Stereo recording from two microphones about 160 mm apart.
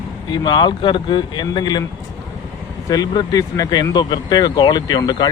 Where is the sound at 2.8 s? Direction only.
25° left (ahead or behind).